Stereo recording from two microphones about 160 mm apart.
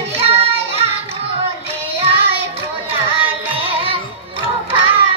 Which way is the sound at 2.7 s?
35° right (ahead or behind).